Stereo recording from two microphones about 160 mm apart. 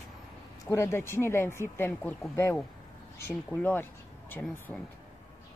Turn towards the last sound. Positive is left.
turn(degrees=10)  # may be behind; listen again after turning